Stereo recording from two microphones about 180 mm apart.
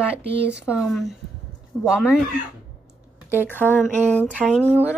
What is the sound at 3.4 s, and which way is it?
Speech, 10° left (ahead or behind).